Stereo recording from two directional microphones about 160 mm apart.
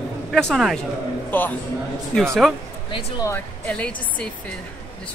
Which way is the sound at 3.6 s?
5° left (ahead or behind).